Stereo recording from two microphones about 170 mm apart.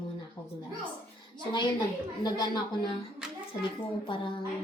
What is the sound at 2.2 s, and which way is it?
Speech, 25° left (ahead or behind).